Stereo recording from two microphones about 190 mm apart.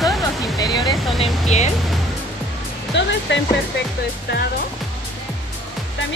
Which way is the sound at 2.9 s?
70° left (ahead or behind).